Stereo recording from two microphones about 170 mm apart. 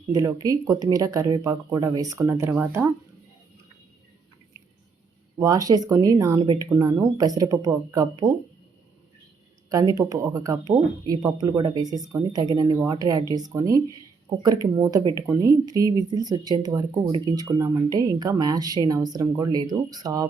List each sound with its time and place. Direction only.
0.1 s speech: 20° right (ahead or behind)
5.4 s speech: 20° right (ahead or behind)
9.6 s speech: 20° right (ahead or behind)